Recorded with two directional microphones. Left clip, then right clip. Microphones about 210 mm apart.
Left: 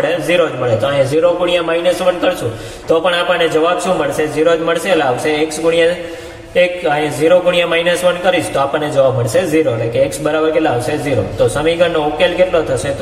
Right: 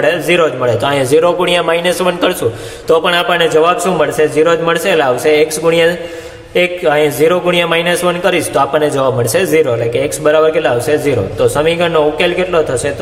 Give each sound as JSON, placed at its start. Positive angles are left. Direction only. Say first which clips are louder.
{"t": 0.3, "sound": "a man's voice", "louder": "right 2 dB", "side_deg": -40}